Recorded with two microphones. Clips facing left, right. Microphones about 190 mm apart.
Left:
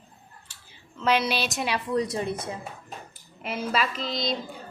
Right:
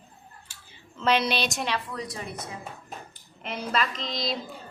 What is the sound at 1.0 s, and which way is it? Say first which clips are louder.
Speech: even; 10° left (ahead or behind).